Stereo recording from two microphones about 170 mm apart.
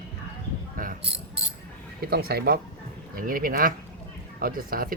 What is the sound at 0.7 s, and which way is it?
Cricket, 50° right (ahead or behind).